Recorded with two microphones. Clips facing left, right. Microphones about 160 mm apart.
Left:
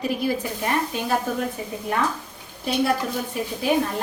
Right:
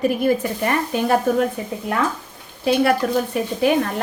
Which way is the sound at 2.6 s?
70° right (ahead or behind).